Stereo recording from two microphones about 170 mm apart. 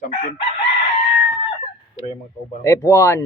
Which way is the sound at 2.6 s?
15° left (ahead or behind).